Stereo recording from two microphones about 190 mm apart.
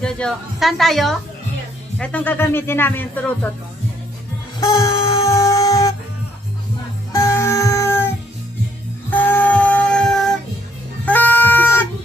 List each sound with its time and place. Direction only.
0.0 s a woman's voice: centre (ahead or behind)
4.7 s a sound: 15° left (ahead or behind)
5.3 s music: 15° left (ahead or behind)
7.1 s music: 15° left (ahead or behind)
9.1 s music: 10° left (ahead or behind)